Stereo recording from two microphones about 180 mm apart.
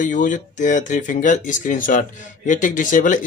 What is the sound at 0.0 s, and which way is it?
Speech, 45° left (ahead or behind).